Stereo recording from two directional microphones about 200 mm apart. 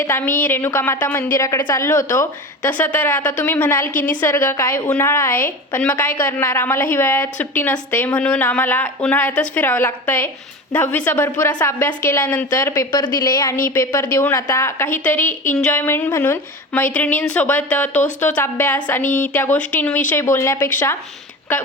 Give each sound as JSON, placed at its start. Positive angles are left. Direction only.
{"t": 0.0, "sound": "a woman's voice", "side_deg": 10}
{"t": 18.0, "sound": "speech", "side_deg": 40}
{"t": 18.3, "sound": "a woman's voice", "side_deg": 10}